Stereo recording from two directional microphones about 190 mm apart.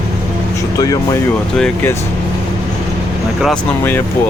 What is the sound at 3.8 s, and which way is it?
Speech, 10° left (ahead or behind).